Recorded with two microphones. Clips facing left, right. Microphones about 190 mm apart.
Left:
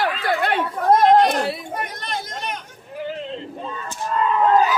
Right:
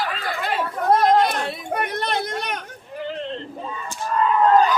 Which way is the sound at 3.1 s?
5° left (ahead or behind).